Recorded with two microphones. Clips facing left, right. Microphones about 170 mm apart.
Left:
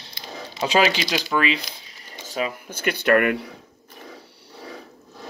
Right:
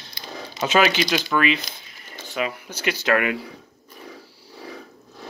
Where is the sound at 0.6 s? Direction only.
30° left (ahead or behind).